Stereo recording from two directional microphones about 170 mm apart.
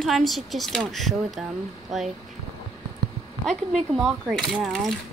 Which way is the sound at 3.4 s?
Centre (ahead or behind).